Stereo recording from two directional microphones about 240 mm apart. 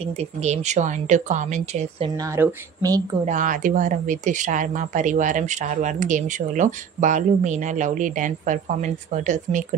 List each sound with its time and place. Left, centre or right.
0.0 s speech: right
2.0 s speech: centre
3.3 s speech: right